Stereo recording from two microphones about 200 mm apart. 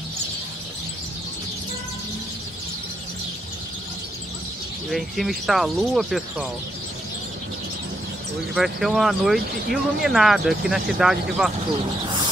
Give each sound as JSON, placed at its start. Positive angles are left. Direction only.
{"t": 4.8, "sound": "speech", "side_deg": 0}
{"t": 8.5, "sound": "speech", "side_deg": 0}